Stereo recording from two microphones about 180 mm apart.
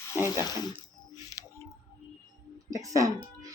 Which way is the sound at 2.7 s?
20° right (ahead or behind).